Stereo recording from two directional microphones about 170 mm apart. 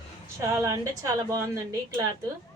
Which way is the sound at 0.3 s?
15° right (ahead or behind).